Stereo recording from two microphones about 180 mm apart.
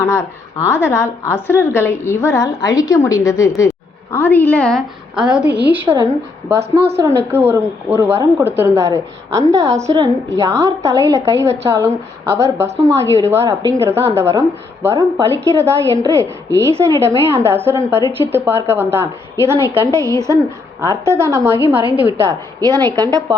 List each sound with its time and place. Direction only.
0.1 s a woman's voice: 15° left (ahead or behind); by 6.1 s 10° right (ahead or behind)
6.6 s a woman's voice: 65° right (ahead or behind)
7.3 s a woman's voice: 15° right (ahead or behind)